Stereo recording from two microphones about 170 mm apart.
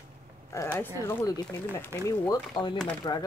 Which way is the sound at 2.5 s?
25° left (ahead or behind).